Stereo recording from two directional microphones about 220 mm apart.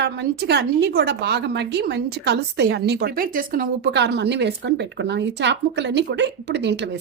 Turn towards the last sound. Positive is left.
turn(degrees=-50)  # may be behind; listen again after turning